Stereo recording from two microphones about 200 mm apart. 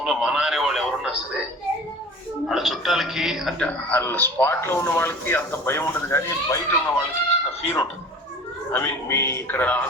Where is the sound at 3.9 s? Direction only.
10° left (ahead or behind).